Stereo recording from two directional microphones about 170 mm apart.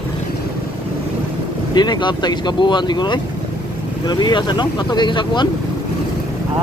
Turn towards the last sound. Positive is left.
turn(degrees=25)  # may be behind; listen again after turning